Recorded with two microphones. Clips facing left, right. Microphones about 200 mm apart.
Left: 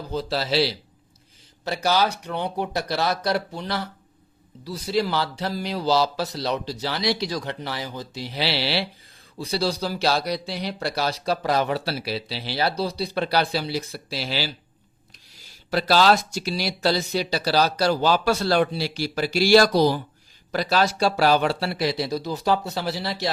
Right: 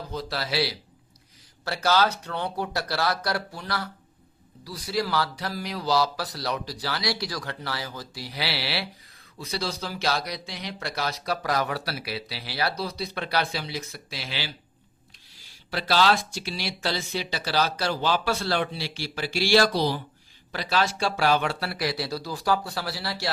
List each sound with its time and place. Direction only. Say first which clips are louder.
0.1 s speech: left 7 dB; 30° left (ahead or behind)
1.6 s speech: left 1 dB; 15° left (ahead or behind); by 14.5 s 35° left (ahead or behind)
15.7 s speech: left 4 dB; 40° left (ahead or behind); by 23.3 s 20° left (ahead or behind)